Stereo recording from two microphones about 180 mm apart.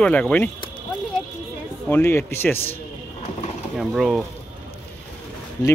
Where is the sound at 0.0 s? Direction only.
5° left (ahead or behind).